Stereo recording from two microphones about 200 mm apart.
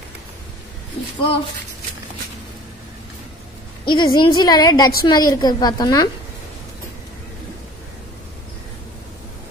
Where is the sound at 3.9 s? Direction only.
20° left (ahead or behind).